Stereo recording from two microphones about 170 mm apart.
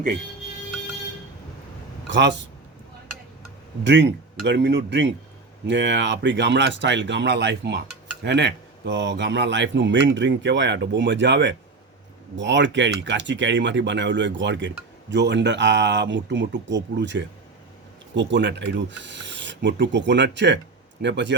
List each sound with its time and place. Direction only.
2.0 s speech: 90° right
3.8 s speech: 90° right